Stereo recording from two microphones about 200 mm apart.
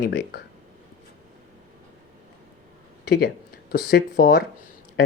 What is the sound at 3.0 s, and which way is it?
Speech, 55° left (ahead or behind).